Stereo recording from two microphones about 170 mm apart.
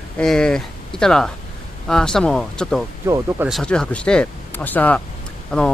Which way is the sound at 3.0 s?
15° right (ahead or behind).